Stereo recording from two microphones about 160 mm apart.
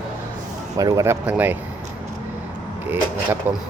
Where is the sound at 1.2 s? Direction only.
10° right (ahead or behind).